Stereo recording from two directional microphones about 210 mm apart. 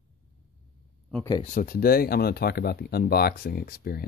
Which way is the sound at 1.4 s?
40° left (ahead or behind).